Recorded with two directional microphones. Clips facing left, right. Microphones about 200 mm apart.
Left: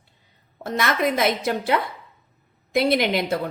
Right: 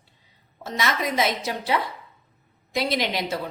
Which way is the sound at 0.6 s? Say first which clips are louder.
Left 4 dB; 55° left (ahead or behind).